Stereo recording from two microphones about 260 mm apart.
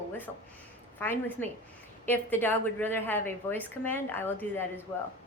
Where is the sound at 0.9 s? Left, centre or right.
Centre.